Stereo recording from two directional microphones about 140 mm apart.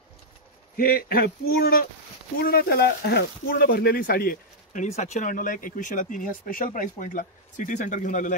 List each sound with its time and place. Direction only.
0.7 s a man's voice: 90° left
4.8 s speech: 55° left (ahead or behind)